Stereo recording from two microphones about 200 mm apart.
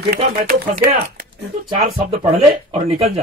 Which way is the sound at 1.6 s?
30° right (ahead or behind).